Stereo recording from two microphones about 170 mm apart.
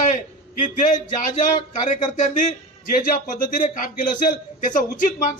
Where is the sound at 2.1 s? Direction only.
50° left (ahead or behind).